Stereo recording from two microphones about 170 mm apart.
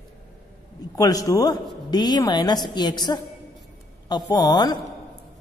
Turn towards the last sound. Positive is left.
turn(degrees=25)  # may be behind; listen again after turning